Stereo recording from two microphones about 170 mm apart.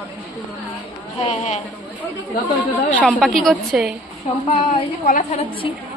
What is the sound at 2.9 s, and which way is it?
A woman's voice, centre (ahead or behind).